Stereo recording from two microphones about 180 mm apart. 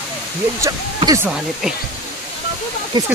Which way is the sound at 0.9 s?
20° right (ahead or behind).